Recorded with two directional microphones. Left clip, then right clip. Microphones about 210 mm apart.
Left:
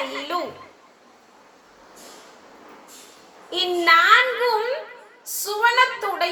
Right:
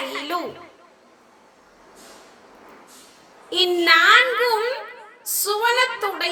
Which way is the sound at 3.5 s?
55° right (ahead or behind).